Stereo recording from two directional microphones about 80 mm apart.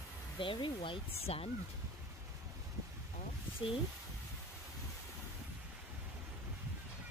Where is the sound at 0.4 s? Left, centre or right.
Left.